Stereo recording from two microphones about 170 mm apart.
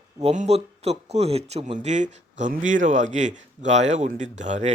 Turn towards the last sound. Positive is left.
turn(degrees=-45)  # may be behind; listen again after turning